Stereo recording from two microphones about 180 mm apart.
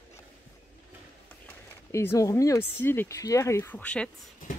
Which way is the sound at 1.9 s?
15° left (ahead or behind).